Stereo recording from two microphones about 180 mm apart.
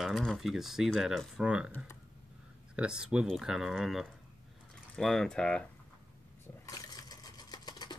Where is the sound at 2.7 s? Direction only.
5° right (ahead or behind).